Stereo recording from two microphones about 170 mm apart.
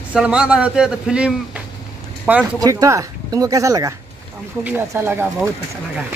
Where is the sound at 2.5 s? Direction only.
20° right (ahead or behind).